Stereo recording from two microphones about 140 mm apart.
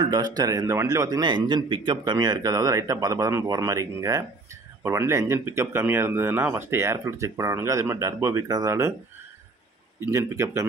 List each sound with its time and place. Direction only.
0.1 s a man's voice: 25° right (ahead or behind)
10.0 s a man's voice: 20° right (ahead or behind)